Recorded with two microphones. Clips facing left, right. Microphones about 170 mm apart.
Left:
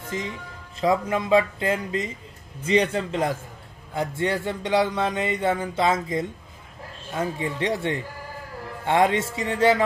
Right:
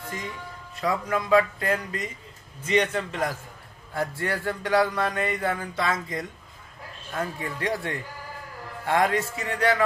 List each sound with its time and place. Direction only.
0.1 s speech: 20° left (ahead or behind)